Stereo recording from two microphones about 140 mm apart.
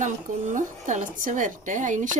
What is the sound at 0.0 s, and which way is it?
Speech, 65° right (ahead or behind).